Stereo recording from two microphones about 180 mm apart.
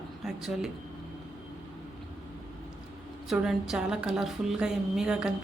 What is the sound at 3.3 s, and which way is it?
A woman's voice, centre (ahead or behind).